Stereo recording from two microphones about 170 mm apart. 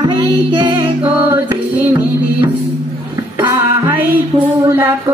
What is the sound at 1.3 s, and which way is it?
Music, 15° right (ahead or behind).